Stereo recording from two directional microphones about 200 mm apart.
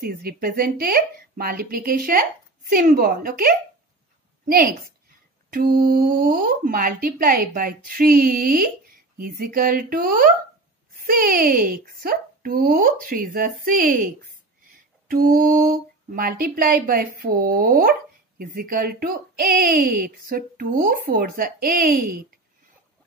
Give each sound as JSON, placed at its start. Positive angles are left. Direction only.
{"t": 0.0, "sound": "speech", "side_deg": -50}
{"t": 5.5, "sound": "speech", "side_deg": -45}